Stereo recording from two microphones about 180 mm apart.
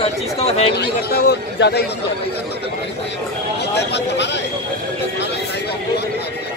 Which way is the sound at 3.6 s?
70° left (ahead or behind).